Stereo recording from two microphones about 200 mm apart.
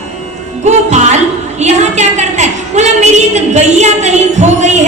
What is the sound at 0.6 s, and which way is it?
A woman's voice, 35° right (ahead or behind).